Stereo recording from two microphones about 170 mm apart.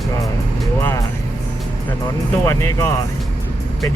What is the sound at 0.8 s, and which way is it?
Speech, 20° left (ahead or behind).